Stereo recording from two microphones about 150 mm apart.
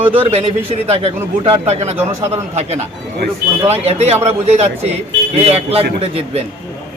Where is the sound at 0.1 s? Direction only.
40° right (ahead or behind).